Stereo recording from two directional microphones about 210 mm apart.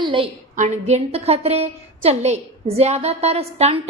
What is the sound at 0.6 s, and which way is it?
A woman's voice, 35° right (ahead or behind).